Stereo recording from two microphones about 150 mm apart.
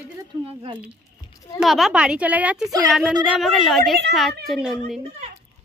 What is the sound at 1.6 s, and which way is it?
A woman's voice, centre (ahead or behind).